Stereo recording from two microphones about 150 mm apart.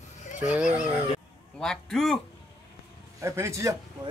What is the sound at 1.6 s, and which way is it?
Speech, 5° left (ahead or behind).